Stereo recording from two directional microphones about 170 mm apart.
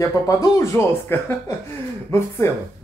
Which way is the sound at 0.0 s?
20° left (ahead or behind).